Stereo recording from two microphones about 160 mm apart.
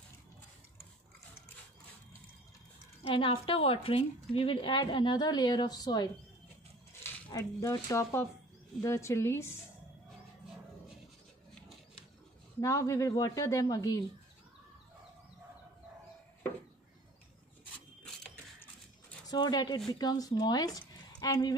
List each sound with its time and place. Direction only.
3.0 s a woman's voice: 35° left (ahead or behind)
7.2 s a woman's voice: 20° left (ahead or behind)
12.5 s a woman's voice: 20° left (ahead or behind)
17.6 s filing: 5° left (ahead or behind)
19.2 s speech: 25° left (ahead or behind)